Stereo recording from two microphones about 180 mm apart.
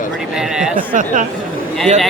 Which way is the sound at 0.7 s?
45° right (ahead or behind).